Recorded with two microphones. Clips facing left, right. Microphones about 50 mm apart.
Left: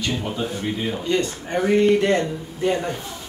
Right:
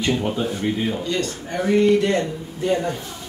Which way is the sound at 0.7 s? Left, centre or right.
Centre.